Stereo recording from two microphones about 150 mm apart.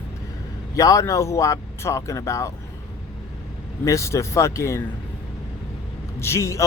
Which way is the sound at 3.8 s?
20° left (ahead or behind).